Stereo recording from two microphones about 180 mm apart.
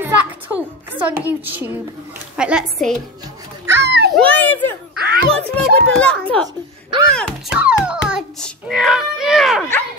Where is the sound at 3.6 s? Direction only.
75° right (ahead or behind).